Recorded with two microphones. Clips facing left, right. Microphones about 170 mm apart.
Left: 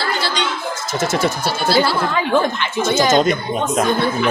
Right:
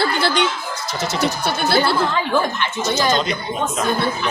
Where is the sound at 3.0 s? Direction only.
45° left (ahead or behind).